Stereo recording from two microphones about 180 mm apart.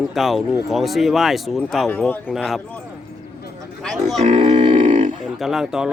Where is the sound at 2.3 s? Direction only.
Centre (ahead or behind).